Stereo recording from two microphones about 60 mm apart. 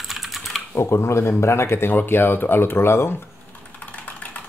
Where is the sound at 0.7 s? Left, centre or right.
Left.